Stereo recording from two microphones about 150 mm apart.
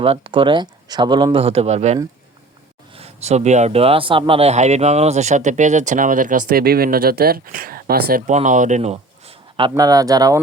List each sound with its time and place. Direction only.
0.0 s speech: 35° right (ahead or behind); by 8.2 s 90° right
8.3 s speech: 55° right (ahead or behind)
9.6 s speech: 30° right (ahead or behind)